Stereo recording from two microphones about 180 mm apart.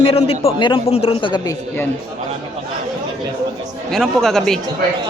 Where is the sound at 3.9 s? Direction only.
5° left (ahead or behind).